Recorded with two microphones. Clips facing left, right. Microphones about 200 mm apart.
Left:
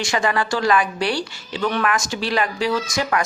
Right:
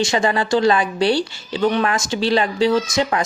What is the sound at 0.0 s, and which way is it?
Speech, 25° right (ahead or behind).